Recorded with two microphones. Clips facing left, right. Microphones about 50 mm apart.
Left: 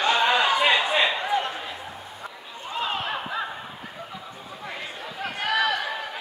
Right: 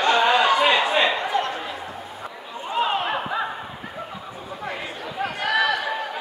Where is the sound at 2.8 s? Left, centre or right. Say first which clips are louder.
Right 5 dB; centre.